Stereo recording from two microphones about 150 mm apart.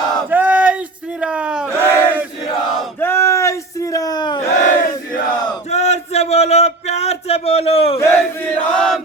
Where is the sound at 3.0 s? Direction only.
15° left (ahead or behind).